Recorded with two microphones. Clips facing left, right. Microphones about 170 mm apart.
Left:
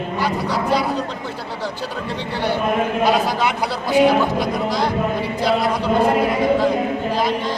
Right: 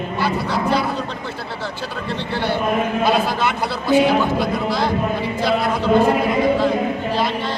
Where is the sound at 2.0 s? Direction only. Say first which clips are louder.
Right 1 dB; 15° left (ahead or behind).